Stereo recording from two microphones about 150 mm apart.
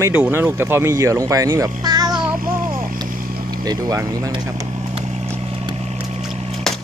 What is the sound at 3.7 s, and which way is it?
Speech, 20° right (ahead or behind).